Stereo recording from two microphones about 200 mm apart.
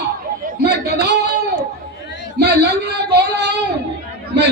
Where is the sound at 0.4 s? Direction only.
55° right (ahead or behind).